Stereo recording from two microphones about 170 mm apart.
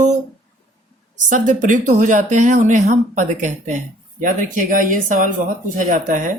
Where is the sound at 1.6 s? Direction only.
50° right (ahead or behind).